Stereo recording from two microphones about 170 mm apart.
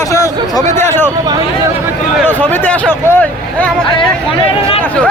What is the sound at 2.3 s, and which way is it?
Speech, 10° left (ahead or behind).